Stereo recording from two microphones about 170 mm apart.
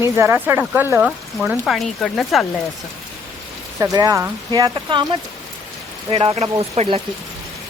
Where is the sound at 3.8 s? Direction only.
20° right (ahead or behind).